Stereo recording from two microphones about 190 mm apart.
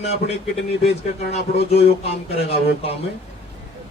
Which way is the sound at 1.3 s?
30° left (ahead or behind).